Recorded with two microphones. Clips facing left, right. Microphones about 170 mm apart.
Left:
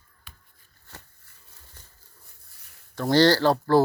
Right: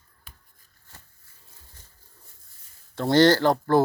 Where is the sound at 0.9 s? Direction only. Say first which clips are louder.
Left 6 dB; 70° left (ahead or behind).